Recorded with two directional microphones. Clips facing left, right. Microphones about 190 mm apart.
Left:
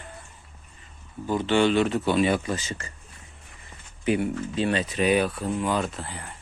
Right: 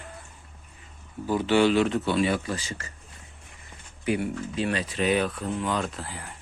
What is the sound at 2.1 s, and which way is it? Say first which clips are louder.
Speech: left 2 dB; 20° left (ahead or behind).